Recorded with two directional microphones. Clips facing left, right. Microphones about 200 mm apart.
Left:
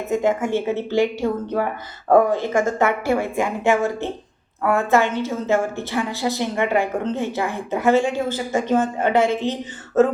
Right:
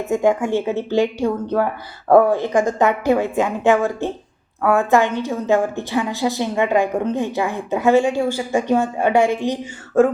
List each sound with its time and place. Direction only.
0.1 s a woman's voice: 15° right (ahead or behind)